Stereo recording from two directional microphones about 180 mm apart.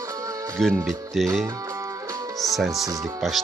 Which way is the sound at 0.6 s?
Centre (ahead or behind).